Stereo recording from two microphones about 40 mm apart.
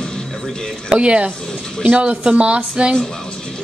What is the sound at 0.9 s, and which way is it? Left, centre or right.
A woman's voice, right.